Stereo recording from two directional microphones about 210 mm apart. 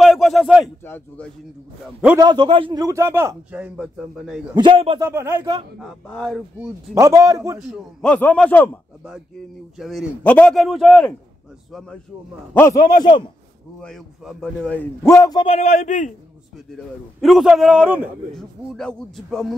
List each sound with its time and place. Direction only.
0.0 s a sound: centre (ahead or behind)
0.8 s a man's voice: 10° left (ahead or behind)
2.1 s a man's voice: 20° right (ahead or behind); by 4.4 s 5° right (ahead or behind)
4.6 s a man's voice: 25° right (ahead or behind)
5.0 s a man's voice: 10° right (ahead or behind)
5.8 s a man's voice: centre (ahead or behind)
7.0 s a man's voice: 15° right (ahead or behind)
7.5 s a man's voice: centre (ahead or behind)
9.8 s a man's voice: centre (ahead or behind)
12.7 s a man's voice: 40° left (ahead or behind)
13.7 s a man's voice: centre (ahead or behind); by 16.1 s 35° left (ahead or behind)
16.5 s a man's voice: centre (ahead or behind)